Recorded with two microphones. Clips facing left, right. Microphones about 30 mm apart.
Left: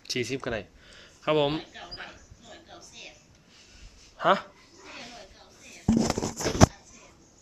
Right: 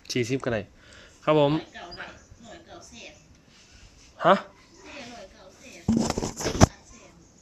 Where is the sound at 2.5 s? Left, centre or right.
Centre.